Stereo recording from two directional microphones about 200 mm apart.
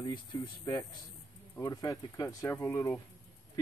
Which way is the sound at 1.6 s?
20° left (ahead or behind).